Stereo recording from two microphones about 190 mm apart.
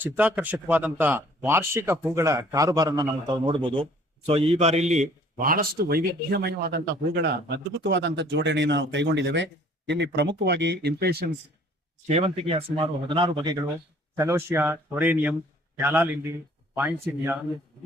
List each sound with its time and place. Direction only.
0.0 s a man's voice: 10° right (ahead or behind); by 11.3 s 55° right (ahead or behind)
12.0 s speech: 30° right (ahead or behind); by 17.3 s 10° right (ahead or behind)